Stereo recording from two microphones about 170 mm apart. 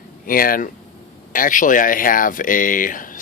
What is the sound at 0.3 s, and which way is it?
Speech, 55° left (ahead or behind).